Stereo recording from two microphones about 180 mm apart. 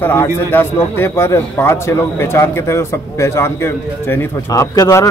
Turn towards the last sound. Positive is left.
turn(degrees=15)  # may be behind; listen again after turning